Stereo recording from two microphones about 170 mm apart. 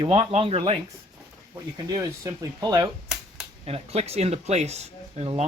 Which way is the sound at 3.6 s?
35° right (ahead or behind).